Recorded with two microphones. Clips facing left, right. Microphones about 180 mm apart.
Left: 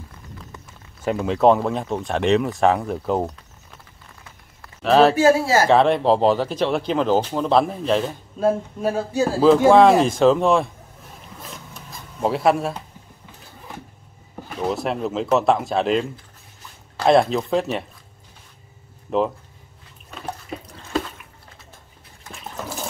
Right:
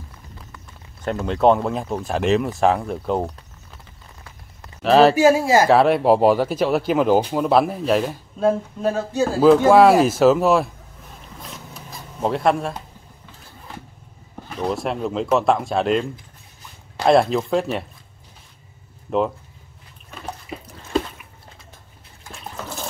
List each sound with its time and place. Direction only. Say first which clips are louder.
1.0 s speech: left 1 dB; centre (ahead or behind)
4.8 s speech: right 1 dB; centre (ahead or behind)
5.1 s speech: right 1 dB; 15° right (ahead or behind); by 9.2 s 10° left (ahead or behind)
9.7 s speech: even; 5° right (ahead or behind)
11.5 s printer: right 1 dB; centre (ahead or behind)
14.6 s speech: even; centre (ahead or behind)
19.0 s speech: even; centre (ahead or behind)
22.2 s water: left 1 dB; centre (ahead or behind)